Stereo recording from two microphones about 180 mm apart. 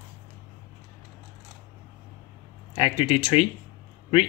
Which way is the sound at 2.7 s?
35° left (ahead or behind).